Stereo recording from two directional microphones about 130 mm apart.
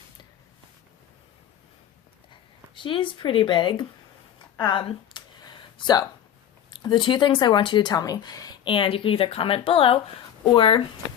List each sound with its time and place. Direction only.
2.7 s speech: 40° left (ahead or behind)
4.6 s a sound: 40° left (ahead or behind)
6.7 s speech: 35° left (ahead or behind)